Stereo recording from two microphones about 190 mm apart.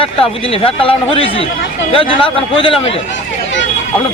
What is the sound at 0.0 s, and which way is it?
Speech, 30° left (ahead or behind).